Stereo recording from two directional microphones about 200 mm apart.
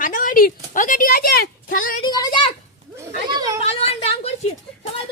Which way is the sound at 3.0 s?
20° right (ahead or behind).